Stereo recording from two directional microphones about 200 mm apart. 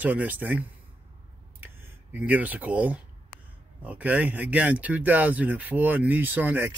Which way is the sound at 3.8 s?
10° right (ahead or behind).